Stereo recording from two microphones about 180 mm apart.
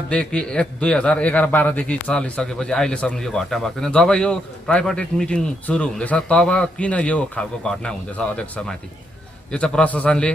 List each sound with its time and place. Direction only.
0.1 s a man's voice: 5° left (ahead or behind)